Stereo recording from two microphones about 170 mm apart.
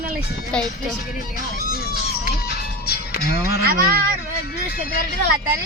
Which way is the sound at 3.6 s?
60° right (ahead or behind).